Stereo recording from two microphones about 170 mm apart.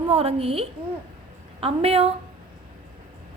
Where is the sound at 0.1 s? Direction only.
35° right (ahead or behind).